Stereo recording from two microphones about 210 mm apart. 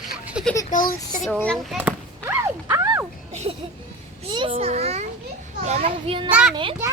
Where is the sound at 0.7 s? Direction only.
40° left (ahead or behind).